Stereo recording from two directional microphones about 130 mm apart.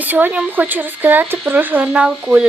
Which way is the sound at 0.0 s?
15° right (ahead or behind).